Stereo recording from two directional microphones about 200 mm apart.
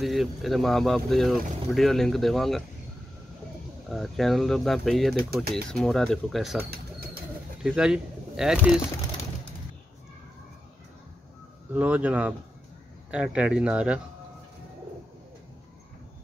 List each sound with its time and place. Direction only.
0.0 s speech: centre (ahead or behind)
3.9 s speech: centre (ahead or behind)
5.1 s speech: 50° right (ahead or behind)
5.7 s speech: 5° left (ahead or behind)
7.6 s speech: 5° right (ahead or behind)
11.7 s speech: 5° right (ahead or behind)